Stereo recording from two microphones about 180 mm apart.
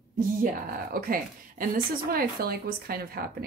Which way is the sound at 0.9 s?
55° right (ahead or behind).